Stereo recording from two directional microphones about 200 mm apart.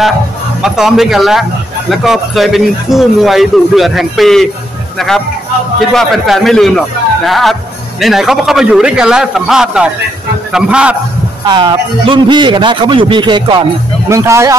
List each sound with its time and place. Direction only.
0.6 s speech: centre (ahead or behind)
11.4 s a man's voice: 25° right (ahead or behind)